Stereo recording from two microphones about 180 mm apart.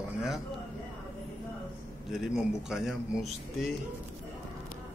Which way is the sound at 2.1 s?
Centre (ahead or behind).